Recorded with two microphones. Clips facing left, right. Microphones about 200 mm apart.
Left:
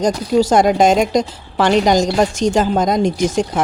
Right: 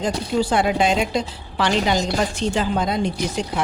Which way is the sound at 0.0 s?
40° left (ahead or behind).